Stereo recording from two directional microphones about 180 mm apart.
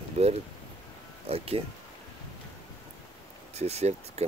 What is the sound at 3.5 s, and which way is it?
Speech, 35° right (ahead or behind).